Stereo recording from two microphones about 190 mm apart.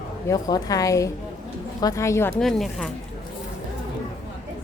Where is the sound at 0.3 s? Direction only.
20° left (ahead or behind).